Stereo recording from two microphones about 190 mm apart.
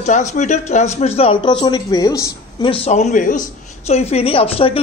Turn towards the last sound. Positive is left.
turn(degrees=30)  # may be behind; listen again after turning